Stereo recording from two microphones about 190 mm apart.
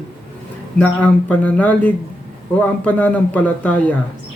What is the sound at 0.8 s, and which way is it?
Speech, 5° left (ahead or behind).